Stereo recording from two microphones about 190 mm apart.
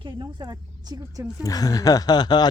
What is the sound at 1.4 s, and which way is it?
Speech, 20° left (ahead or behind).